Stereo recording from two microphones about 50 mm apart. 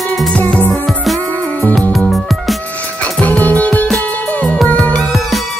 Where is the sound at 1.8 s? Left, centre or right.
Centre.